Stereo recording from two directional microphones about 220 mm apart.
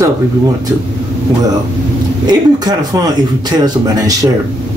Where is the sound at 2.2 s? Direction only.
15° right (ahead or behind).